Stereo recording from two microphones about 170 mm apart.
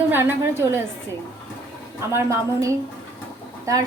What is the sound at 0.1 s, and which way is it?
Speech, 15° right (ahead or behind).